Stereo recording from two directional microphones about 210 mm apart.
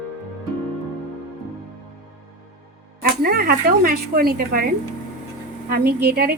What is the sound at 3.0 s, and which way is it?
A woman's voice, 45° right (ahead or behind).